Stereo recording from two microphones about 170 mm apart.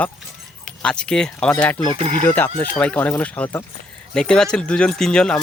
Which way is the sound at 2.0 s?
35° right (ahead or behind).